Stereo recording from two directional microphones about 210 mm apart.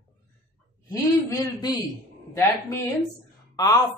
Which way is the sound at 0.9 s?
15° left (ahead or behind).